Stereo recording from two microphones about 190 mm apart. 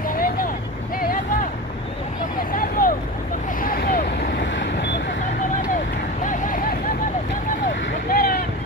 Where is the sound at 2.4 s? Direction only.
45° left (ahead or behind); by 5.1 s 65° left (ahead or behind).